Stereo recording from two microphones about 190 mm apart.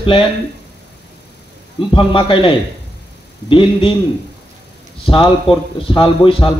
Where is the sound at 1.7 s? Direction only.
25° left (ahead or behind).